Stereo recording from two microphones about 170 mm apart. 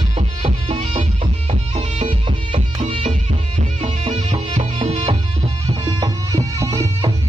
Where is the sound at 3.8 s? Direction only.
30° right (ahead or behind).